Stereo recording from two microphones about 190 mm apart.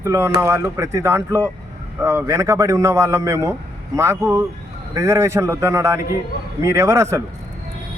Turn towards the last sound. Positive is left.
turn(degrees=-15)  # may be behind; listen again after turning